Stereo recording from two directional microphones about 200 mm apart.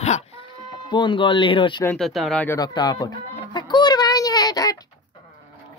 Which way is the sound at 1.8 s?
5° left (ahead or behind).